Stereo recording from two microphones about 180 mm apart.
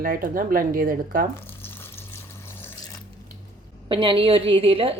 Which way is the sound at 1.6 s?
10° left (ahead or behind).